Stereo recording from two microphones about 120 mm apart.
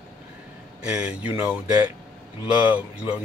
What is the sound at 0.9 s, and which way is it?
Speech, 10° right (ahead or behind).